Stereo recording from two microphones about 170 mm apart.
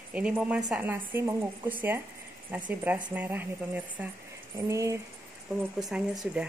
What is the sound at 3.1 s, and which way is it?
A woman's voice, 10° right (ahead or behind).